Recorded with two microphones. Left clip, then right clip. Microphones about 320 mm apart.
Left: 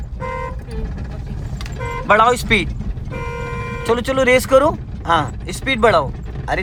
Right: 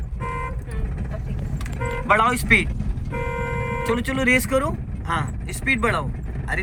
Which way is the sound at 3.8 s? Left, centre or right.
Centre.